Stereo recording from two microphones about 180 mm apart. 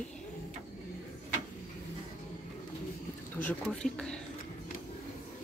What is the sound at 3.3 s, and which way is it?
Speech, 5° left (ahead or behind).